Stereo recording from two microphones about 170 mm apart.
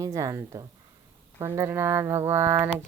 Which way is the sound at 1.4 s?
15° right (ahead or behind).